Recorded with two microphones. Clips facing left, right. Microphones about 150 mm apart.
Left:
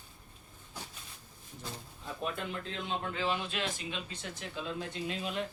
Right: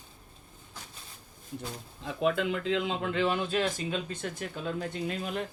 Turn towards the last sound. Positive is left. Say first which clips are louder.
# right 3 dB
turn(degrees=-50)  # may be behind; listen again after turning